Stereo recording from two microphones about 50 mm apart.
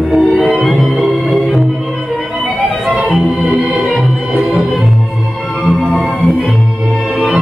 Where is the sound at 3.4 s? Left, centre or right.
Right.